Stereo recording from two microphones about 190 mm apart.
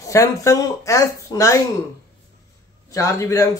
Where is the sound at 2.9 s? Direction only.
15° left (ahead or behind).